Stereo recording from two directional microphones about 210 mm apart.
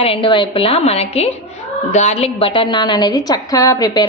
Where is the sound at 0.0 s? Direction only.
25° left (ahead or behind).